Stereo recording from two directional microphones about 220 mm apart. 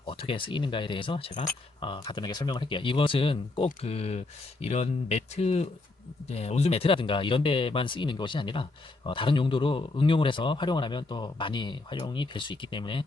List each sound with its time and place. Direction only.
0.1 s speech: 25° left (ahead or behind)